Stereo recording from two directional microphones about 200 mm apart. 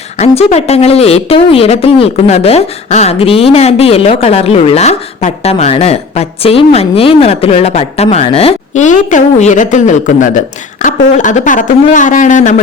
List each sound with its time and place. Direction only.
0.2 s speech: 30° left (ahead or behind)